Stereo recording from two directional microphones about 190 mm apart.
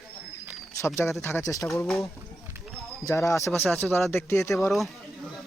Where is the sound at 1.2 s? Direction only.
10° left (ahead or behind).